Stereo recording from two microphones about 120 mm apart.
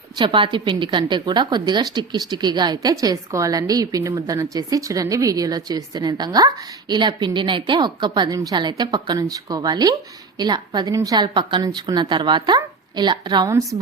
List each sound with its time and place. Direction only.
0.2 s a woman's voice: 45° right (ahead or behind)